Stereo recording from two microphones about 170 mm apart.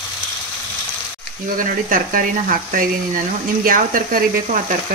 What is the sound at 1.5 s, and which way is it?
Speech, 55° right (ahead or behind).